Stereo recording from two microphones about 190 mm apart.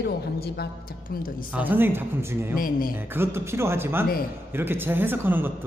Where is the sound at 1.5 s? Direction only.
10° right (ahead or behind).